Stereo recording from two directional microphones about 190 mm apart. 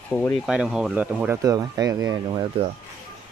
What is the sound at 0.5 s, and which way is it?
Speech, 5° right (ahead or behind).